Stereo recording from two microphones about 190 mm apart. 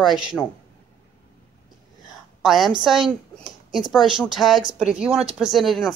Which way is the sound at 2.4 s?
Centre (ahead or behind).